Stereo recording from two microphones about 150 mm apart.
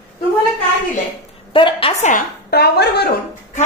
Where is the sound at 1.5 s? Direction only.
35° left (ahead or behind).